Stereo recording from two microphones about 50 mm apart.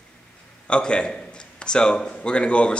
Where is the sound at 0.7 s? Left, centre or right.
Left.